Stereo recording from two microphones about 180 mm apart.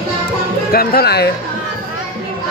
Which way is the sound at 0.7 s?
60° left (ahead or behind).